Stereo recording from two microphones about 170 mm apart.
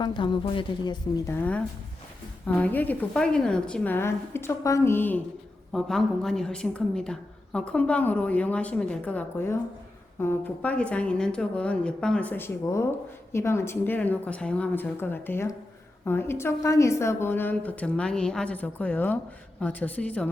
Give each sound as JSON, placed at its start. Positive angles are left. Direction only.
{"t": 0.0, "sound": "speech", "side_deg": 25}
{"t": 1.3, "sound": "a woman's voice", "side_deg": 10}